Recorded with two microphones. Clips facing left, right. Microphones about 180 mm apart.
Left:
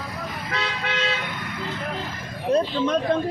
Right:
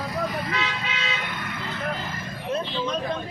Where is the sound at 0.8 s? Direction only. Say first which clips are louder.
Left 5 dB; 65° left (ahead or behind).